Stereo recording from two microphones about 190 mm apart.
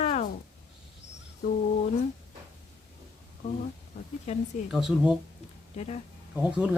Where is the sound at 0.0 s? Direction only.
35° left (ahead or behind).